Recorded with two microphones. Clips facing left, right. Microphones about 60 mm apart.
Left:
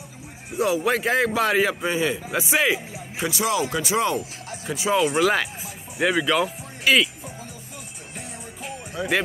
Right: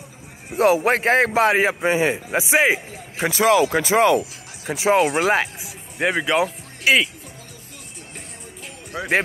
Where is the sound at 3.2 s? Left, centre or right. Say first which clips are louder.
Right 7 dB; right.